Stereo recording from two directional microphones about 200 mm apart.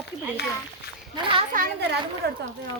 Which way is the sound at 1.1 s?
25° right (ahead or behind).